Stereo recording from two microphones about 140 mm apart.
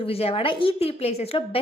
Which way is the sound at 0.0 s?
45° left (ahead or behind).